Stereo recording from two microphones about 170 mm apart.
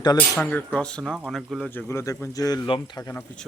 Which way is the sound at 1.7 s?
15° left (ahead or behind).